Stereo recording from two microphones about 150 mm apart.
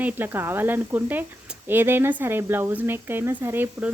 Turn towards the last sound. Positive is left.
turn(degrees=-15)  # may be behind; listen again after turning